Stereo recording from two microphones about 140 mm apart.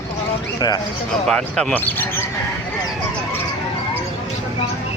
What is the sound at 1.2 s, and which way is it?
Speech, 5° left (ahead or behind).